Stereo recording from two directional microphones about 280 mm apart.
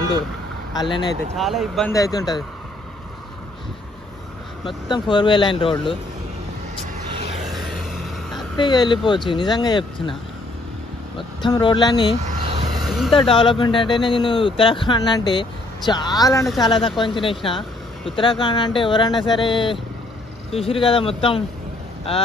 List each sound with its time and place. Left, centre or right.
0.7 s speech: centre
1.3 s speech: centre
1.9 s speech: centre
4.6 s speech: centre
7.5 s vehicle: centre
8.5 s speech: centre
11.1 s speech: centre
12.3 s vehicle: centre
12.8 s vehicle: centre
13.1 s speech: centre
16.4 s speech: centre
17.0 s speech: centre